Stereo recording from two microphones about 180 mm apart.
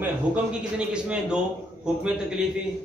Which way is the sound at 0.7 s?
5° right (ahead or behind).